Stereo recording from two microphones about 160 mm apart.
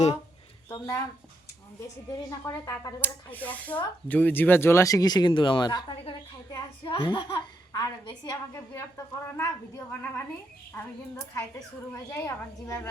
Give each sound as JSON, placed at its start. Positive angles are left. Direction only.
{"t": 0.7, "sound": "speech", "side_deg": 15}
{"t": 2.0, "sound": "speech", "side_deg": 20}
{"t": 11.9, "sound": "speech", "side_deg": 15}